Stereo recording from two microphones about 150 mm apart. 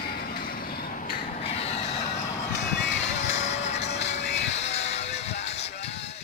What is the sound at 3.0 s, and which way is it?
Music, 50° left (ahead or behind).